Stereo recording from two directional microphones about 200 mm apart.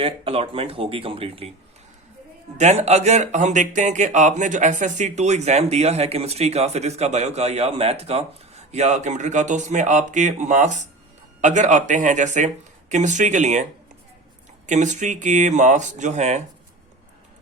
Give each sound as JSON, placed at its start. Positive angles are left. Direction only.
{"t": 0.0, "sound": "speech", "side_deg": -30}
{"t": 2.6, "sound": "speech", "side_deg": -35}
{"t": 14.7, "sound": "speech", "side_deg": -35}